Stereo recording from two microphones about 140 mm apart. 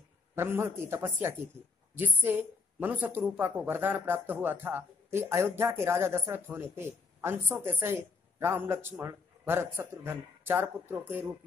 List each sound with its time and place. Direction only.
0.4 s a woman's voice: 15° right (ahead or behind)